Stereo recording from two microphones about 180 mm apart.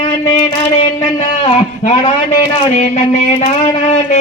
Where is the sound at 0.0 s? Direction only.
35° left (ahead or behind).